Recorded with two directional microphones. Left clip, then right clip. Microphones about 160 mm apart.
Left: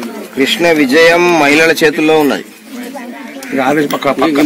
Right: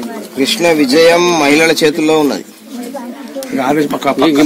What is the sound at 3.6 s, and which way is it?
Speech, 50° left (ahead or behind).